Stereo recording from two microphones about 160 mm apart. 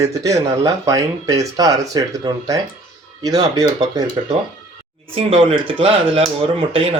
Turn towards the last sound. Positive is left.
turn(degrees=-35)  # may be behind; listen again after turning